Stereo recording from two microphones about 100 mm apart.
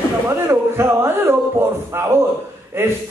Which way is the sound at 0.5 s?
25° right (ahead or behind).